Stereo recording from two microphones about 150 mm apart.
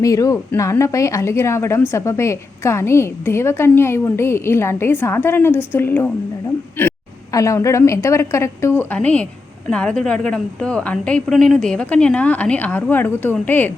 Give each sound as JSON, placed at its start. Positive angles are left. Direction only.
{"t": 0.0, "sound": "a woman's voice", "side_deg": 20}